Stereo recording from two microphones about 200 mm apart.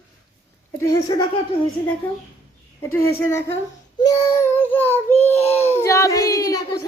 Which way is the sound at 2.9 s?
15° left (ahead or behind).